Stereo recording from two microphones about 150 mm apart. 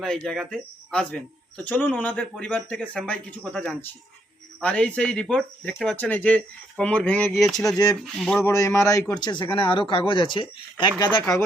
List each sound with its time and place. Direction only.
0.0 s speech: centre (ahead or behind)
8.4 s speech: 20° left (ahead or behind)